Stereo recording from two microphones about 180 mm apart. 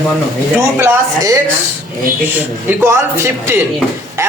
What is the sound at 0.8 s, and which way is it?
Speech, 15° right (ahead or behind).